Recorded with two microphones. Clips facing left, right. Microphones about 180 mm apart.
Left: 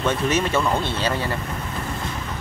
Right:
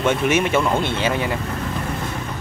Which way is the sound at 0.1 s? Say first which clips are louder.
Right 3 dB; 15° right (ahead or behind).